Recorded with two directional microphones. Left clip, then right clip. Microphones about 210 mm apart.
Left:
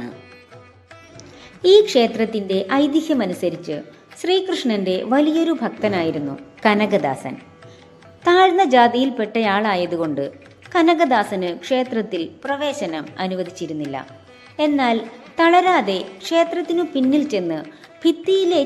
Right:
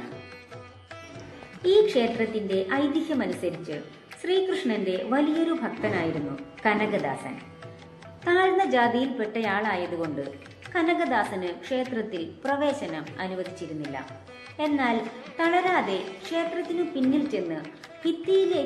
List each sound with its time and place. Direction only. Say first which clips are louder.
1.6 s a woman's voice: left 8 dB; 45° left (ahead or behind)